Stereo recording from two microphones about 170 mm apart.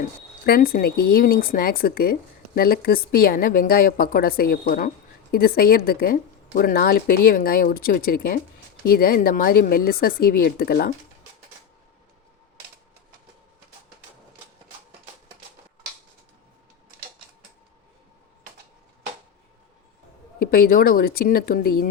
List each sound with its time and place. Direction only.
0.4 s a woman's voice: 60° left (ahead or behind)
20.4 s a woman's voice: 60° left (ahead or behind)